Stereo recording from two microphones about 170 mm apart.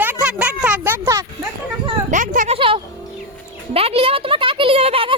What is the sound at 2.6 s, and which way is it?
A child's voice, 30° right (ahead or behind).